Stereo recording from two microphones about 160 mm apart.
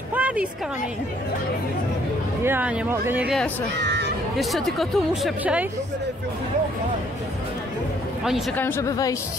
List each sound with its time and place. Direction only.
0.1 s a sound: 10° right (ahead or behind)
2.4 s speech: 10° right (ahead or behind)
3.8 s a sound: 90° right
4.4 s speech: centre (ahead or behind)
5.4 s speech: 10° right (ahead or behind)
8.5 s speech: 15° left (ahead or behind)